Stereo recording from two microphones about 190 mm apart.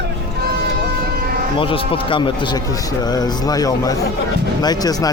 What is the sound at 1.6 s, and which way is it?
Speech, 30° left (ahead or behind).